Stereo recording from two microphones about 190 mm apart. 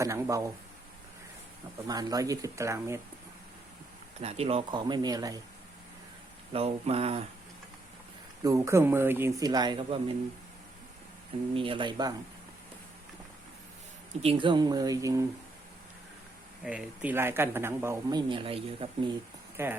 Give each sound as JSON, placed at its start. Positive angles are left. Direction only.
{"t": 0.0, "sound": "speech", "side_deg": -15}
{"t": 1.9, "sound": "speech", "side_deg": -20}
{"t": 4.2, "sound": "speech", "side_deg": -30}
{"t": 6.5, "sound": "speech", "side_deg": -30}
{"t": 8.4, "sound": "speech", "side_deg": -15}
{"t": 11.5, "sound": "speech", "side_deg": -25}
{"t": 14.2, "sound": "speech", "side_deg": -30}
{"t": 16.6, "sound": "speech", "side_deg": -5}
{"t": 19.6, "sound": "speech", "side_deg": -10}